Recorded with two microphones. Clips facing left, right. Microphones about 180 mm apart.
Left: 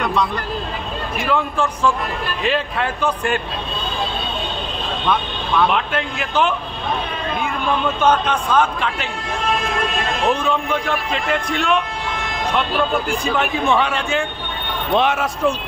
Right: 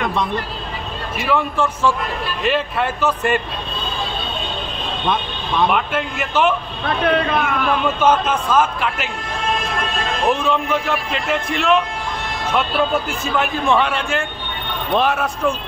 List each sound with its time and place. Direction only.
1.2 s speech: 5° right (ahead or behind)
5.0 s speech: 20° right (ahead or behind)
5.7 s a man's voice: 5° right (ahead or behind)
7.1 s a sound: 75° right (ahead or behind)
7.8 s a man's voice: 5° right (ahead or behind)
10.2 s speech: centre (ahead or behind)